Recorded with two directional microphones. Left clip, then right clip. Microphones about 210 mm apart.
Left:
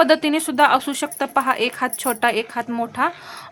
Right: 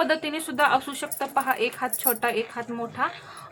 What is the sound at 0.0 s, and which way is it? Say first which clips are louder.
A woman's voice: left 9 dB; 40° left (ahead or behind).